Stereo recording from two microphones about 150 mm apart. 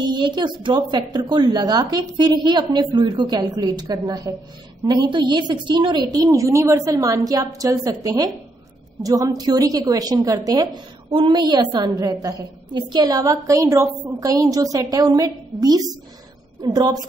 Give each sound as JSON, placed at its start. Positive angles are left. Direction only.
{"t": 0.0, "sound": "a woman's voice", "side_deg": -30}